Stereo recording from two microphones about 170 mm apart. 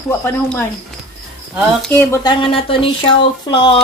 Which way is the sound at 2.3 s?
30° left (ahead or behind).